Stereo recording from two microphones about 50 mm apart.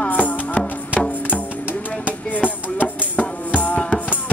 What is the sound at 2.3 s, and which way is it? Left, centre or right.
Music, left.